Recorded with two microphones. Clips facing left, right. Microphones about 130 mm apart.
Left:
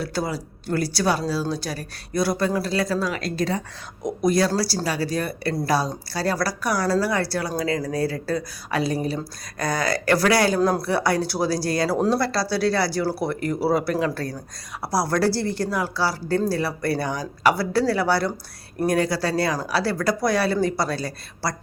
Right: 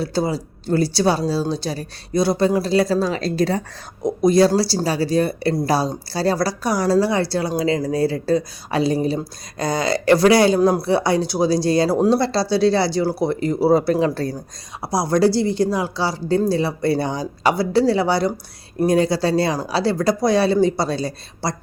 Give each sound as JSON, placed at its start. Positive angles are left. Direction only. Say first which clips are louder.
{"t": 0.0, "sound": "a woman's voice", "louder": "right 5 dB", "side_deg": -25}